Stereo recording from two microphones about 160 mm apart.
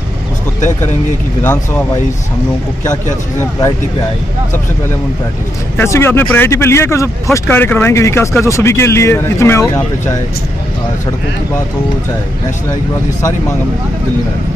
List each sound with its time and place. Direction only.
5.8 s speech: 15° left (ahead or behind)